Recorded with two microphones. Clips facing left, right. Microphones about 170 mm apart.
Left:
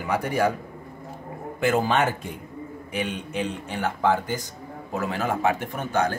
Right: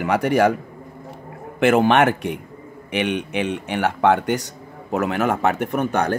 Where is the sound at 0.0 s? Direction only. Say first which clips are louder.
Right 6 dB; 75° right (ahead or behind).